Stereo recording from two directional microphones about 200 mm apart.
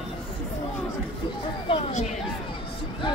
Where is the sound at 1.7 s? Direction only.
30° left (ahead or behind).